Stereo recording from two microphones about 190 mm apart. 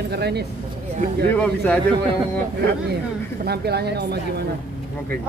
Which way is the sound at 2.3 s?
60° right (ahead or behind).